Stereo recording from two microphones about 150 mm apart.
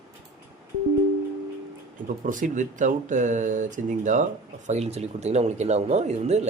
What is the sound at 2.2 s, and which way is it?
Speech, 60° right (ahead or behind).